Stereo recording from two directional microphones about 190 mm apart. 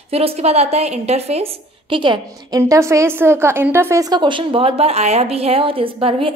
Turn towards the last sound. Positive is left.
turn(degrees=-30)  # may be behind; listen again after turning